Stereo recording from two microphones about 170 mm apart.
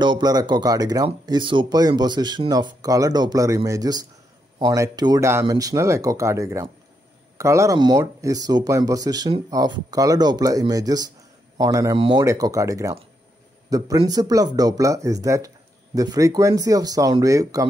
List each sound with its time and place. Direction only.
0.0 s speech: 25° right (ahead or behind)